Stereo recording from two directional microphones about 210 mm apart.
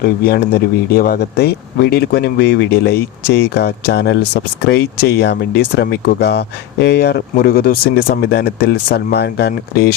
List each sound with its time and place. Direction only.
0.0 s speech: 50° left (ahead or behind)